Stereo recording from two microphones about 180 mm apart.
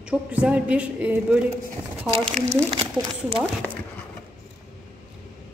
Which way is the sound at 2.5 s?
25° right (ahead or behind).